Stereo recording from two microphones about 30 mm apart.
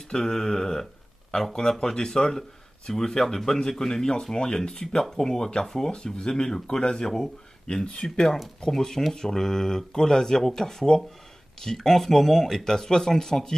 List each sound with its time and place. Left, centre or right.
0.1 s speech: centre